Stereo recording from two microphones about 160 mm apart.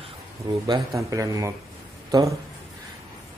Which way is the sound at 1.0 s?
20° right (ahead or behind).